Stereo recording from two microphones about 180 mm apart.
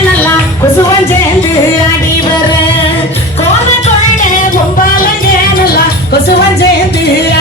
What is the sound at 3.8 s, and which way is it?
Music, 45° left (ahead or behind).